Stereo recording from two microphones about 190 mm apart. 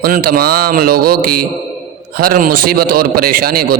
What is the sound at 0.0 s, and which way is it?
Speech, 50° right (ahead or behind).